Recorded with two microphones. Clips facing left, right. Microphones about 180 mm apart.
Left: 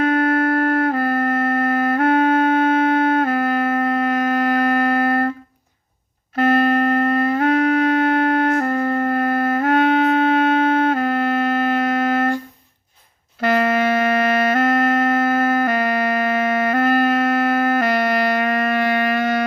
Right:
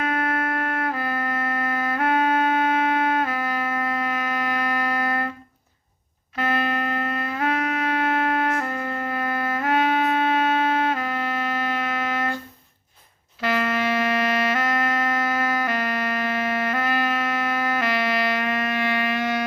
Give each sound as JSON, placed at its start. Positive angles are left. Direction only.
{"t": 0.0, "sound": "music", "side_deg": 35}
{"t": 6.3, "sound": "music", "side_deg": 50}
{"t": 13.4, "sound": "music", "side_deg": 50}